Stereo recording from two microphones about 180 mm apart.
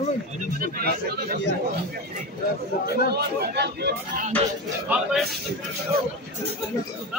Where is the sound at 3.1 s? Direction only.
65° right (ahead or behind).